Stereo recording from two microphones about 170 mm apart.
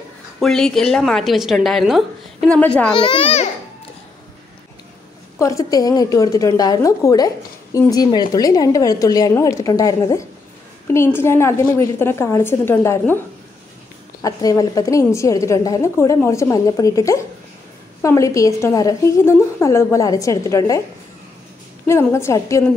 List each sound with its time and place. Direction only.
0.4 s a woman's voice: 5° left (ahead or behind)
2.9 s a woman's voice: 30° left (ahead or behind)
5.4 s a woman's voice: 20° left (ahead or behind)
14.2 s a woman's voice: 20° left (ahead or behind)
21.8 s a woman's voice: 15° left (ahead or behind)